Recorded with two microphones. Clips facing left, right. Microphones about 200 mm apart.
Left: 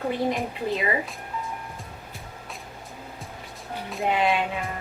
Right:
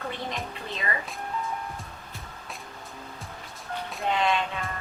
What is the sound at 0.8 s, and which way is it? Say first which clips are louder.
Speech: left 4 dB; 15° left (ahead or behind).